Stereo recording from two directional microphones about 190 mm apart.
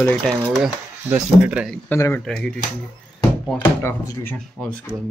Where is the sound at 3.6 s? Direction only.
15° left (ahead or behind).